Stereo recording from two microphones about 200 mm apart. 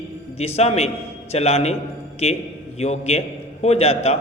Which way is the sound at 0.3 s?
30° left (ahead or behind).